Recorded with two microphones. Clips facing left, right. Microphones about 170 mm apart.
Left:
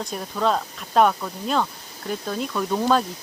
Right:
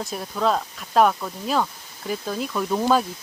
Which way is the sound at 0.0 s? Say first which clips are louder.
Even; centre (ahead or behind).